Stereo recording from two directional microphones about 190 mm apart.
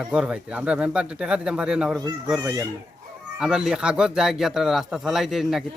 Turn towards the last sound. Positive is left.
turn(degrees=0)  # may be behind; listen again after turning